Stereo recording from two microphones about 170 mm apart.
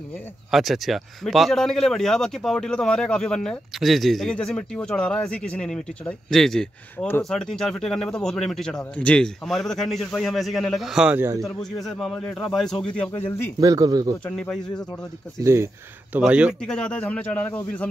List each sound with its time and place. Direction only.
0.5 s speech: centre (ahead or behind)
11.4 s a man's voice: centre (ahead or behind)
13.6 s speech: 20° right (ahead or behind)
14.2 s speech: 5° left (ahead or behind)
15.4 s speech: 15° right (ahead or behind)
16.7 s a man's voice: 5° left (ahead or behind)